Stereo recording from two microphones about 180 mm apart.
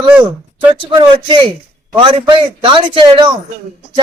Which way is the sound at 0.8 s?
25° right (ahead or behind).